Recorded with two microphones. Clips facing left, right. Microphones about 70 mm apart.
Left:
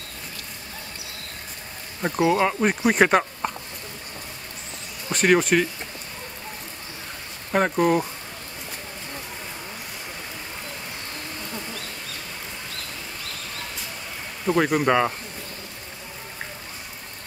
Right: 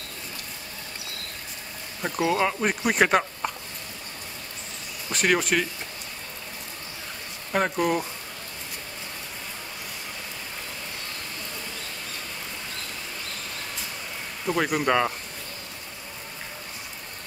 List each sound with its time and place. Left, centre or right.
2.0 s speech: centre
5.1 s speech: centre
7.5 s speech: centre
14.4 s speech: centre